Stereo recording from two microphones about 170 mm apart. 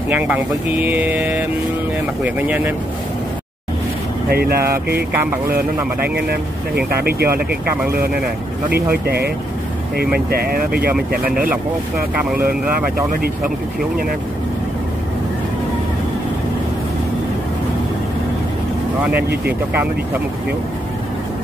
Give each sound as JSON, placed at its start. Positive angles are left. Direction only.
{"t": 0.1, "sound": "speech", "side_deg": -10}
{"t": 4.3, "sound": "speech", "side_deg": -65}
{"t": 8.9, "sound": "speech", "side_deg": -70}
{"t": 12.2, "sound": "speech", "side_deg": -5}